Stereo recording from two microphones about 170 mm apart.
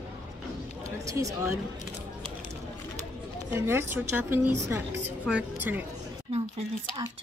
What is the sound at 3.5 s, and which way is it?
Speech, 15° right (ahead or behind).